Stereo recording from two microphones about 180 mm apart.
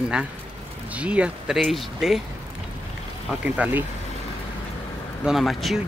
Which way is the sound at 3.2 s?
5° right (ahead or behind).